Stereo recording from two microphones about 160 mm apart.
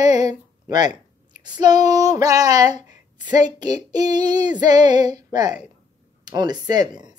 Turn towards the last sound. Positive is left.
turn(degrees=-25)  # may be behind; listen again after turning